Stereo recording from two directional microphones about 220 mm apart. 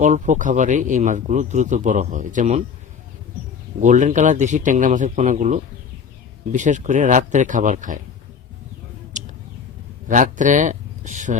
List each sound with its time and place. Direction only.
0.0 s speech: 35° right (ahead or behind)
3.8 s speech: 35° right (ahead or behind)
9.1 s a sound: 35° right (ahead or behind)
10.1 s speech: 35° right (ahead or behind)